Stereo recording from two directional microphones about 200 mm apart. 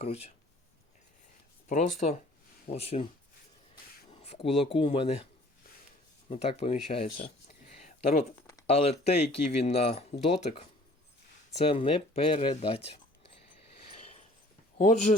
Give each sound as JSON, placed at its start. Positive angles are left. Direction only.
{"t": 0.0, "sound": "speech", "side_deg": 30}
{"t": 1.6, "sound": "speech", "side_deg": 35}
{"t": 4.1, "sound": "speech", "side_deg": 30}
{"t": 6.2, "sound": "speech", "side_deg": 30}
{"t": 7.9, "sound": "a sound", "side_deg": 35}
{"t": 8.6, "sound": "speech", "side_deg": 30}
{"t": 13.9, "sound": "a sound", "side_deg": 30}
{"t": 14.8, "sound": "speech", "side_deg": 35}